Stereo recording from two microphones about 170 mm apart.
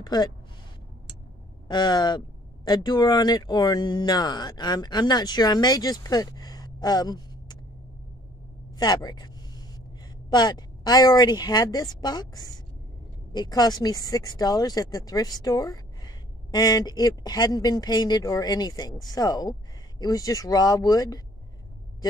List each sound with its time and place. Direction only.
0.0 s speech: 25° left (ahead or behind)
1.7 s speech: 25° left (ahead or behind)
8.7 s a sound: 25° left (ahead or behind)
10.3 s speech: 25° left (ahead or behind)